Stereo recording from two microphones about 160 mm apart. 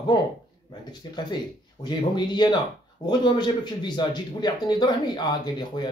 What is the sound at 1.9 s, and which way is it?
Speech, 25° left (ahead or behind).